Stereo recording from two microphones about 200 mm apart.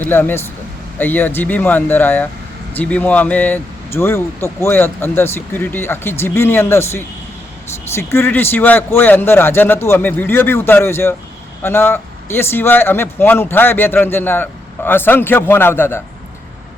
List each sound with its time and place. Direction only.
0.0 s speech: 10° left (ahead or behind)